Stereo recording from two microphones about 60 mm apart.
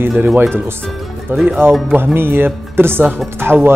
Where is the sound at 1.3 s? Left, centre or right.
Right.